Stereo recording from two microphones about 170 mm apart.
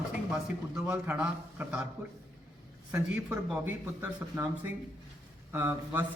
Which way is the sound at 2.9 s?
10° right (ahead or behind).